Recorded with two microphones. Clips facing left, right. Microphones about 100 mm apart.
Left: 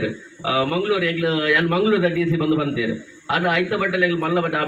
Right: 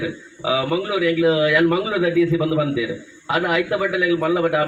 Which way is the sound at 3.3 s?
5° right (ahead or behind).